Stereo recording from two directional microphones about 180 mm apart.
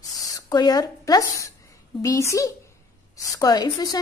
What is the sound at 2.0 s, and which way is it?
A woman's voice, 15° left (ahead or behind).